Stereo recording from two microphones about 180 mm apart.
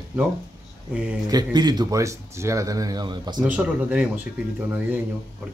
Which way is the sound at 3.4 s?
5° right (ahead or behind).